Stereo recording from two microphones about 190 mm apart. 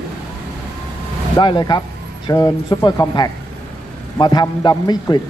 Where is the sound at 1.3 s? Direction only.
20° left (ahead or behind).